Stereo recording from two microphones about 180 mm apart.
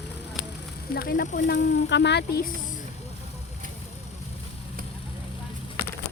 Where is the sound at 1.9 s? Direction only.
75° left (ahead or behind).